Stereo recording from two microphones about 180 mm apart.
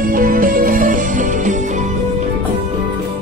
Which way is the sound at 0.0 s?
50° right (ahead or behind).